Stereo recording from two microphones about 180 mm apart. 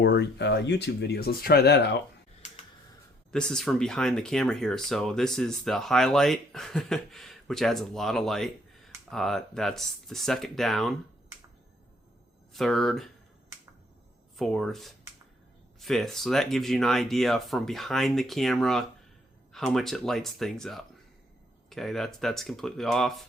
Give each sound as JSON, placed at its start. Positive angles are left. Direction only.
{"t": 0.0, "sound": "speech", "side_deg": 70}
{"t": 3.3, "sound": "speech", "side_deg": 5}
{"t": 12.5, "sound": "speech", "side_deg": 0}
{"t": 14.3, "sound": "speech", "side_deg": 0}